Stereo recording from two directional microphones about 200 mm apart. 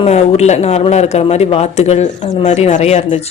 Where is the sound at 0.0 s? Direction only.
30° left (ahead or behind).